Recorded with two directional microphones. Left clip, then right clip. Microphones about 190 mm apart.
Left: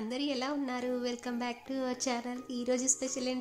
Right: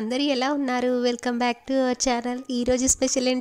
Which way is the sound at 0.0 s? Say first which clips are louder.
Right 11 dB; 40° right (ahead or behind).